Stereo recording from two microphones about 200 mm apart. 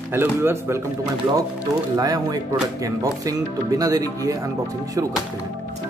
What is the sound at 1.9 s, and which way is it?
Speech, 20° right (ahead or behind).